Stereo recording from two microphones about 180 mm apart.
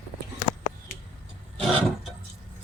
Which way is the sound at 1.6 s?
Centre (ahead or behind).